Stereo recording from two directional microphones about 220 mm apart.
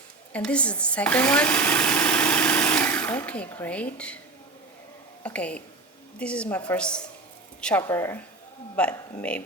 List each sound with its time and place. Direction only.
0.3 s speech: 5° left (ahead or behind)
5.2 s a woman's voice: 5° left (ahead or behind)